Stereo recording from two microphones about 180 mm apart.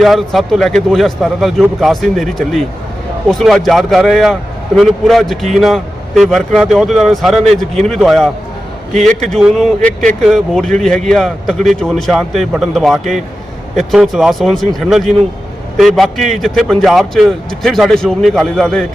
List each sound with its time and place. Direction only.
0.0 s a man's voice: centre (ahead or behind)
8.9 s a man's voice: 40° right (ahead or behind)
9.3 s a man's voice: centre (ahead or behind)